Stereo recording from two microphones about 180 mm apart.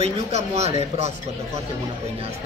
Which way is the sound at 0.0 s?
35° right (ahead or behind).